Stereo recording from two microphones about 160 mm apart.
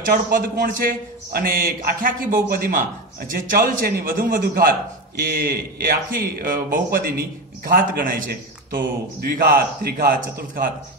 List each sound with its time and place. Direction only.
0.0 s a man's voice: 60° right (ahead or behind)